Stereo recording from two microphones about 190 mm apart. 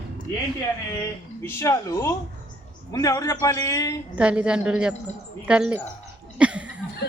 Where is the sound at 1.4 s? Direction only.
15° left (ahead or behind).